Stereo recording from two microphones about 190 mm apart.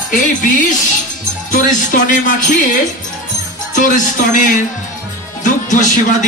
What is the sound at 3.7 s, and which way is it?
Speech, 45° left (ahead or behind).